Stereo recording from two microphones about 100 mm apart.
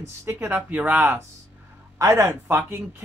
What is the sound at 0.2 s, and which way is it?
Speech, 20° right (ahead or behind).